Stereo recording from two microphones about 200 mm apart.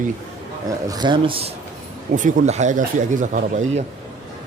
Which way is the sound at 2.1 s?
40° right (ahead or behind).